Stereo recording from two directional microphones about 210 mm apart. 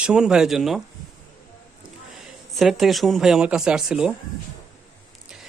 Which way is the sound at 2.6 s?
Centre (ahead or behind).